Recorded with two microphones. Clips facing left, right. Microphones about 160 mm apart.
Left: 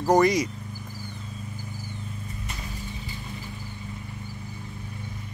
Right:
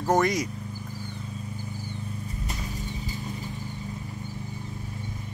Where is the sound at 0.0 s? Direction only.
Centre (ahead or behind).